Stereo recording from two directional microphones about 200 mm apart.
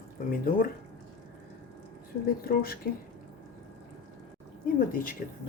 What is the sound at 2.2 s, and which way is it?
Speech, 45° left (ahead or behind).